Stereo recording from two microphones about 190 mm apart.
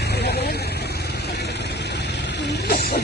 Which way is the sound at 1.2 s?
60° left (ahead or behind).